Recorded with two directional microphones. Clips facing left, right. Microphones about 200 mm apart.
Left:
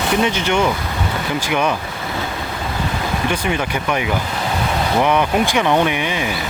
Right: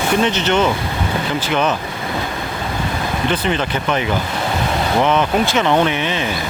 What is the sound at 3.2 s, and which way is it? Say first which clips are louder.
Speech: right 3 dB; 10° left (ahead or behind).